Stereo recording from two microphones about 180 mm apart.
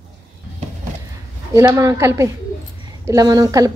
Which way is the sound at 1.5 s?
20° right (ahead or behind).